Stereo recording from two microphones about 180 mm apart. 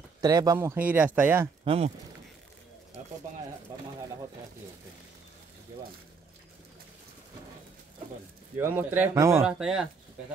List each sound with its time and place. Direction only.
0.2 s speech: 20° right (ahead or behind)
1.6 s speech: 35° right (ahead or behind)
8.5 s speech: 10° right (ahead or behind)
9.6 s speech: 5° right (ahead or behind)